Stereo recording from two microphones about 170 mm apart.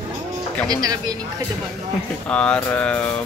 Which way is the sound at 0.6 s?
20° right (ahead or behind).